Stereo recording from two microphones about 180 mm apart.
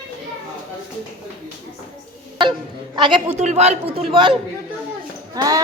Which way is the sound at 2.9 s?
25° right (ahead or behind).